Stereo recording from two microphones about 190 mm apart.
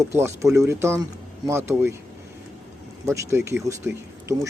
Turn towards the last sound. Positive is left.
turn(degrees=-15)  # may be behind; listen again after turning